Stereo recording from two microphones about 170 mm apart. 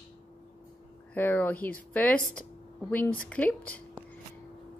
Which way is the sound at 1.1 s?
10° left (ahead or behind).